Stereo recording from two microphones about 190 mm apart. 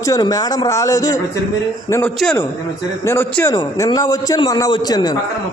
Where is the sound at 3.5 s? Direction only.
20° left (ahead or behind).